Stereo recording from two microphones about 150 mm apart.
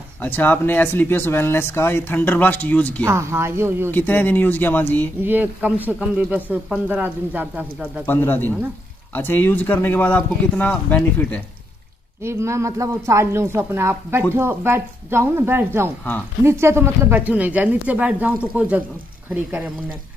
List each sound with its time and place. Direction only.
0.2 s speech: 10° left (ahead or behind)
3.1 s a man's voice: 15° right (ahead or behind)
3.9 s speech: 10° left (ahead or behind)
5.2 s a man's voice: 10° right (ahead or behind)
8.0 s speech: 15° left (ahead or behind)
12.2 s a man's voice: 15° right (ahead or behind)